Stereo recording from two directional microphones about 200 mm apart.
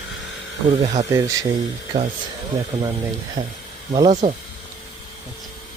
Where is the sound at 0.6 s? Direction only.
25° right (ahead or behind).